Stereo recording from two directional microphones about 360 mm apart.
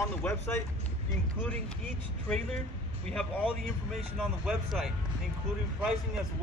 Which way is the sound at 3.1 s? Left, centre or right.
Centre.